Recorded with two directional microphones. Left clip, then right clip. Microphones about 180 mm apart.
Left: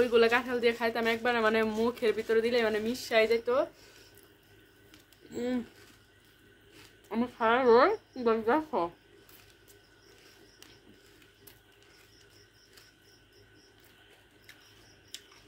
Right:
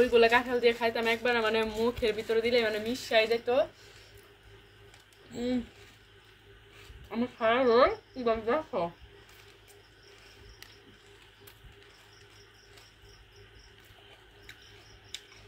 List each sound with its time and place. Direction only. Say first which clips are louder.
0.0 s speech: right 2 dB; 30° left (ahead or behind)
5.3 s speech: right 1 dB; 25° left (ahead or behind)
7.1 s speech: even; 35° left (ahead or behind)